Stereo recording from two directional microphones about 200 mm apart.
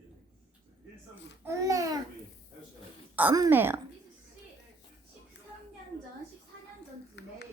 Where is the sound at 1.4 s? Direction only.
15° right (ahead or behind).